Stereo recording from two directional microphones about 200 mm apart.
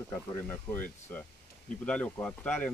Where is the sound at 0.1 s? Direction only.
10° left (ahead or behind).